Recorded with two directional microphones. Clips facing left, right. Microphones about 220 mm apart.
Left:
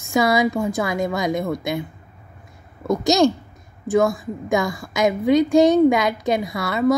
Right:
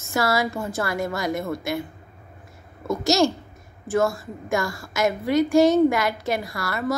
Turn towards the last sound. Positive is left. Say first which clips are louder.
# left 5 dB
turn(degrees=20)  # may be behind; listen again after turning